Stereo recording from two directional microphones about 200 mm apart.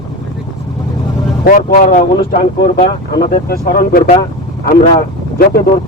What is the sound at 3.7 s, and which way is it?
Speech, 45° left (ahead or behind).